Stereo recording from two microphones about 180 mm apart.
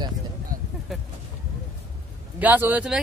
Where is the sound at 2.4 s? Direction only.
10° right (ahead or behind).